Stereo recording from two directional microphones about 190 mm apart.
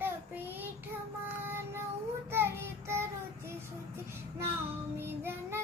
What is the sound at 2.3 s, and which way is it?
Child singing, 15° right (ahead or behind).